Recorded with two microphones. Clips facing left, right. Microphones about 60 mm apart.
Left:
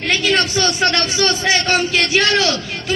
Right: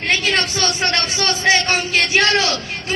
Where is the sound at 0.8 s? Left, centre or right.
Right.